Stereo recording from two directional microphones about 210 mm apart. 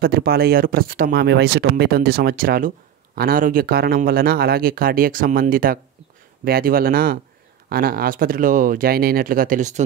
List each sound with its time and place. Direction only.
0.0 s speech: 45° right (ahead or behind)